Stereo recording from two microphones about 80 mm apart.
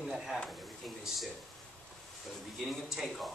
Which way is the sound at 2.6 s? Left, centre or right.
Centre.